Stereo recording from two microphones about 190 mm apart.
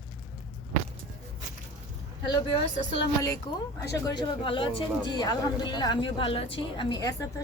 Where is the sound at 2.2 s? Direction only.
25° left (ahead or behind).